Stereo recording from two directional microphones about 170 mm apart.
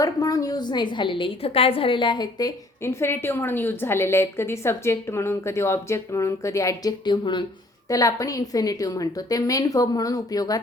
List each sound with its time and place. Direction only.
0.0 s a woman's voice: 20° left (ahead or behind)